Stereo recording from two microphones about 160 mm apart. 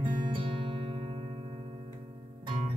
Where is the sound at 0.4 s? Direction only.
35° right (ahead or behind).